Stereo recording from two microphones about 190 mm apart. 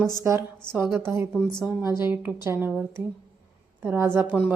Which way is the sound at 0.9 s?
15° right (ahead or behind).